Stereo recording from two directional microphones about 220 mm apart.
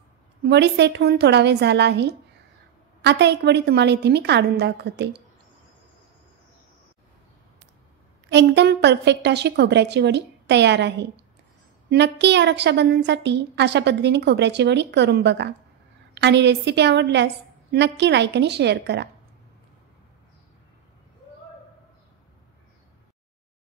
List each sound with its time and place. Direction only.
0.5 s a woman's voice: 50° right (ahead or behind)
8.3 s a woman's voice: 50° right (ahead or behind)